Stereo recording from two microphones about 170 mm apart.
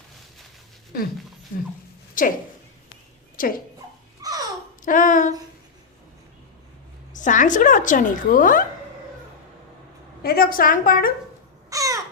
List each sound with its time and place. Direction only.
2.2 s a woman's voice: 55° left (ahead or behind)
3.4 s speech: 55° left (ahead or behind)
4.2 s babbling: 20° right (ahead or behind)
4.9 s a woman's voice: 50° left (ahead or behind)
7.1 s a woman's voice: 50° left (ahead or behind)
10.2 s a woman's voice: 60° left (ahead or behind)
11.7 s crow: 20° right (ahead or behind)